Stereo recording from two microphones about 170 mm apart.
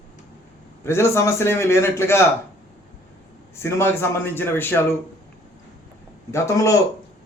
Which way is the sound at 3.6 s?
15° left (ahead or behind).